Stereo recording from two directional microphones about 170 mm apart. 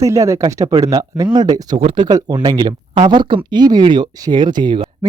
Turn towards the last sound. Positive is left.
turn(degrees=-25)  # may be behind; listen again after turning